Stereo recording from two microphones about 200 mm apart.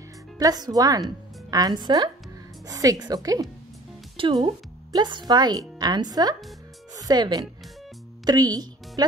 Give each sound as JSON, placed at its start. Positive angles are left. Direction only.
{"t": 0.4, "sound": "a woman's voice", "side_deg": -20}